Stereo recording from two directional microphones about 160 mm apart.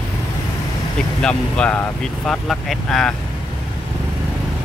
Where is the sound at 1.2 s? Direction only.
5° left (ahead or behind).